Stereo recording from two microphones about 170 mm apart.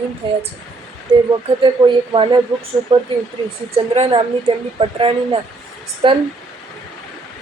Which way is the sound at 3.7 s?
35° right (ahead or behind).